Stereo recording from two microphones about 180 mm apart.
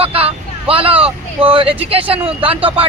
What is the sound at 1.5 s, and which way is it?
Speech, 30° right (ahead or behind).